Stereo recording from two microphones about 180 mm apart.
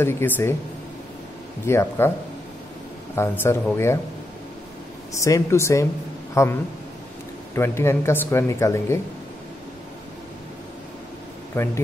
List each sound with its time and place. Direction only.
0.0 s speech: 15° left (ahead or behind)
1.7 s speech: 15° left (ahead or behind)
3.2 s speech: 10° left (ahead or behind)
5.2 s speech: 15° left (ahead or behind)
7.5 s speech: 15° left (ahead or behind)
11.5 s a man's voice: 15° left (ahead or behind)